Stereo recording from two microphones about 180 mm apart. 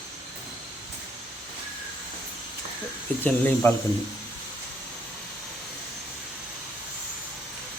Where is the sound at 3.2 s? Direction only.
10° left (ahead or behind).